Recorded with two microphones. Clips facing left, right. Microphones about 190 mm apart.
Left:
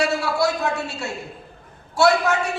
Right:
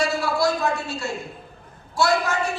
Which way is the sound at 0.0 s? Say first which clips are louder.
Left 1 dB; 65° left (ahead or behind).